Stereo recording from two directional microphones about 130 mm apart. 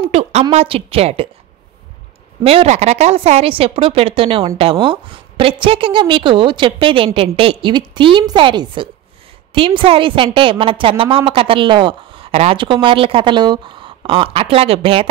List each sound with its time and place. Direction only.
0.1 s a woman's voice: 55° right (ahead or behind)
2.4 s a woman's voice: 50° right (ahead or behind)